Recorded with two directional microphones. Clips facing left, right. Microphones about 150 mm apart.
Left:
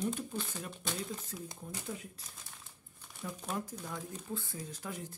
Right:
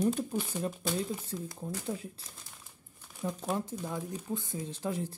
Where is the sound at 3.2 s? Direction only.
25° right (ahead or behind).